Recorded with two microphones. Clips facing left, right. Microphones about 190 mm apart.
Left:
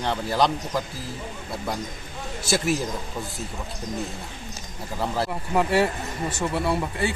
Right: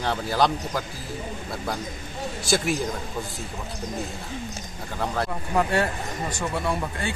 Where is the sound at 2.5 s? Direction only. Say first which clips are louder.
Left 1 dB; centre (ahead or behind).